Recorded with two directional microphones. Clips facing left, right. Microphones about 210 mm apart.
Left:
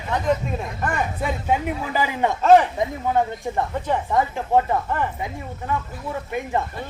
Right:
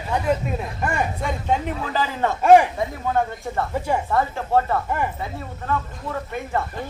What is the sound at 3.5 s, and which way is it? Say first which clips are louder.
Speech: even; 15° left (ahead or behind).